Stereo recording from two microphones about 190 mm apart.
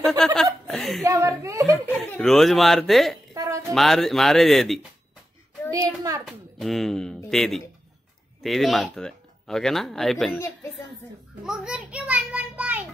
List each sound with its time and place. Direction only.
0.2 s speech: centre (ahead or behind)
0.7 s chuckle: centre (ahead or behind)
1.0 s speech: 15° right (ahead or behind)
1.9 s speech: 5° left (ahead or behind)
3.3 s a sound: 15° right (ahead or behind)
3.7 s speech: centre (ahead or behind)
5.7 s speech: 15° right (ahead or behind)
6.2 s speech: centre (ahead or behind)
11.4 s a child's voice: 5° right (ahead or behind)